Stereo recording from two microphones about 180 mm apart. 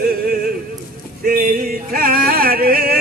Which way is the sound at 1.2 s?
55° right (ahead or behind).